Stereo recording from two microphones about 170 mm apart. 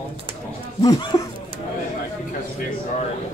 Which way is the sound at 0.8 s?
25° left (ahead or behind).